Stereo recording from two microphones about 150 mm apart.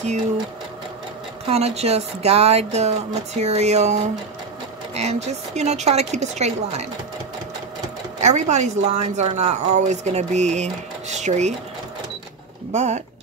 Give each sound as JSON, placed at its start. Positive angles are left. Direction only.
{"t": 1.5, "sound": "a woman's voice", "side_deg": -45}
{"t": 8.2, "sound": "a woman's voice", "side_deg": -50}
{"t": 12.7, "sound": "a woman's voice", "side_deg": -50}